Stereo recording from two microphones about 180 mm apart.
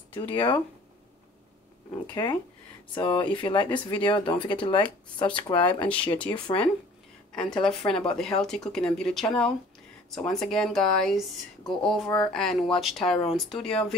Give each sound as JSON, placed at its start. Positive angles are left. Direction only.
{"t": 0.1, "sound": "speech", "side_deg": 30}
{"t": 2.0, "sound": "speech", "side_deg": 25}
{"t": 7.3, "sound": "speech", "side_deg": 5}